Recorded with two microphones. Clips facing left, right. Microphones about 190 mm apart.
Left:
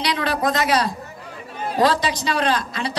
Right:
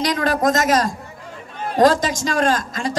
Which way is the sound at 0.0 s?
45° right (ahead or behind).